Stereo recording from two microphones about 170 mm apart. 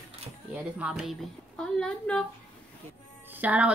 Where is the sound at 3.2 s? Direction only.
10° right (ahead or behind).